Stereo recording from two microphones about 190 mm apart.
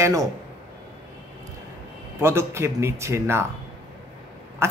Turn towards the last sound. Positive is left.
turn(degrees=-15)  # may be behind; listen again after turning